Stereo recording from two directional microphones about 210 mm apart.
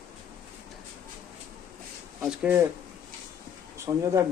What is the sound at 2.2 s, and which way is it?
Speech, 5° right (ahead or behind).